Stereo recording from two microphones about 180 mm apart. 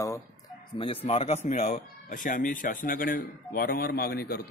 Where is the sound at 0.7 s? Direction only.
35° left (ahead or behind).